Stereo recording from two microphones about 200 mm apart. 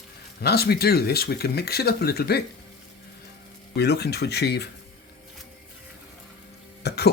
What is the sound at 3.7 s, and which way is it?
Speech, 55° left (ahead or behind).